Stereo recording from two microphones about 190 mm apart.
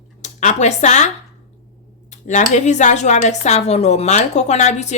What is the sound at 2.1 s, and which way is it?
Speech, 40° left (ahead or behind).